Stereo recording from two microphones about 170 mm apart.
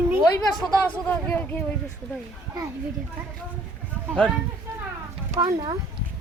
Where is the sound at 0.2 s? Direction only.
5° left (ahead or behind).